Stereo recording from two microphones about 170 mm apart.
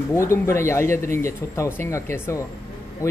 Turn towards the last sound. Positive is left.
turn(degrees=20)  # may be behind; listen again after turning